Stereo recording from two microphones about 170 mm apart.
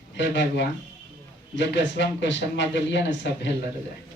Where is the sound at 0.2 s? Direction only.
90° left.